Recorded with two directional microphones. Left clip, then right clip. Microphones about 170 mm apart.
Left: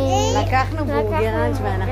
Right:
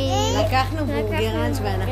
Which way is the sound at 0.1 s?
20° right (ahead or behind).